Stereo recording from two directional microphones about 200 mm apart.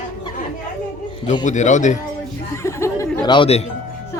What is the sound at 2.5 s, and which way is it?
Chuckle, 15° left (ahead or behind).